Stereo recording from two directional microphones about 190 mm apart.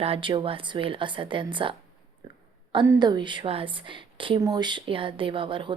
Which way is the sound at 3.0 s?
25° right (ahead or behind).